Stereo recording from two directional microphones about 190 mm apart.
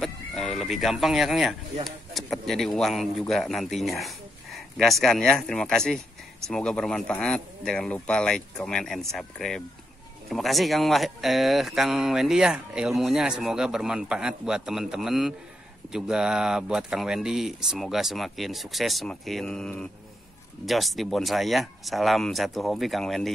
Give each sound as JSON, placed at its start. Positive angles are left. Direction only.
{"t": 0.0, "sound": "speech", "side_deg": 0}